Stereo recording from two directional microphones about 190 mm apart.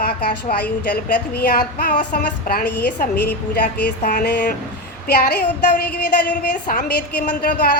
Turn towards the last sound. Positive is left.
turn(degrees=50)  # may be behind; listen again after turning